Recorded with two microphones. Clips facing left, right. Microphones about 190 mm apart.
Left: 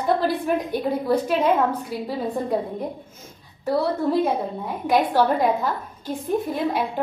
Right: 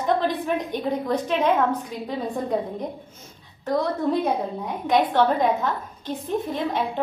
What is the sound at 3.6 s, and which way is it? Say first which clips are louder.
A woman's voice: left 1 dB; 10° left (ahead or behind).